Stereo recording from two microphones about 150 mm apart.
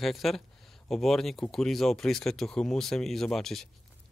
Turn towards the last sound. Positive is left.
turn(degrees=0)  # may be behind; listen again after turning